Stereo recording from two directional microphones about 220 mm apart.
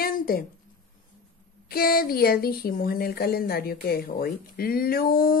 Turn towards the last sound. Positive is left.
turn(degrees=40)  # may be behind; listen again after turning